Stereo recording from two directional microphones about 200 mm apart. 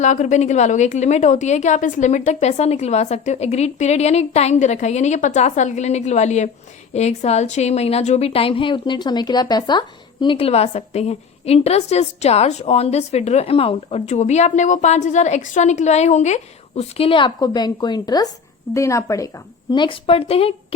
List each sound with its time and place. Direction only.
0.0 s a woman's voice: 35° left (ahead or behind)